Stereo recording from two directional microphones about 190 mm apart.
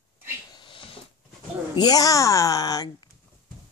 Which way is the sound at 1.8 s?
20° left (ahead or behind).